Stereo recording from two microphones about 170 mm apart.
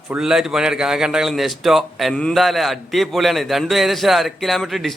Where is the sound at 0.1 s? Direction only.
5° right (ahead or behind).